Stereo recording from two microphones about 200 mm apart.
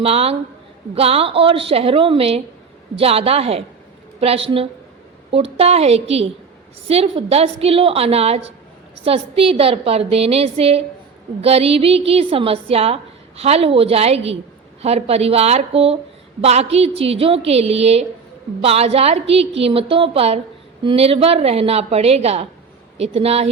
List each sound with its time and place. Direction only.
0.0 s a woman's voice: 30° right (ahead or behind)